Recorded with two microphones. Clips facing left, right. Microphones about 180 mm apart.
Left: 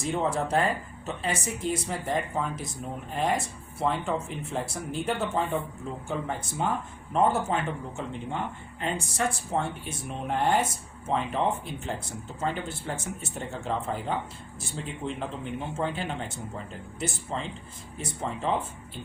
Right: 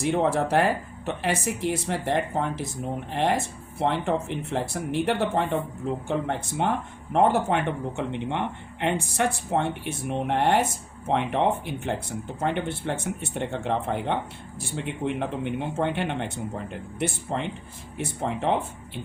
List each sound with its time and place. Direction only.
0.0 s speech: 65° right (ahead or behind)